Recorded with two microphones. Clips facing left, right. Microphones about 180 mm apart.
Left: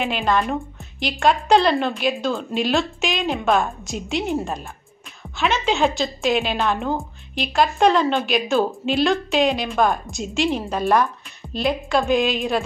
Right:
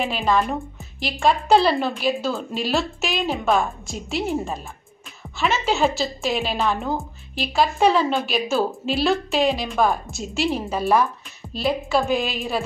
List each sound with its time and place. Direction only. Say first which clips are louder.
0.0 s a woman's voice: even; centre (ahead or behind)